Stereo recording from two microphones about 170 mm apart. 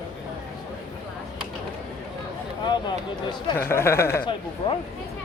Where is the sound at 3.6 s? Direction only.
15° left (ahead or behind).